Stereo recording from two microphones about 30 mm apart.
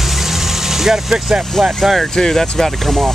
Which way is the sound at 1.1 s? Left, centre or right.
Right.